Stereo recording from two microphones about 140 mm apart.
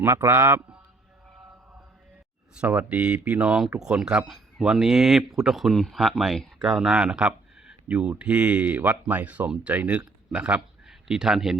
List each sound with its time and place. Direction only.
0.0 s a man's voice: 20° right (ahead or behind)
2.6 s a man's voice: 10° right (ahead or behind)